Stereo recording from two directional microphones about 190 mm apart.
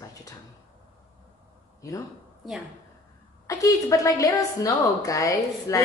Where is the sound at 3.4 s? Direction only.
20° left (ahead or behind).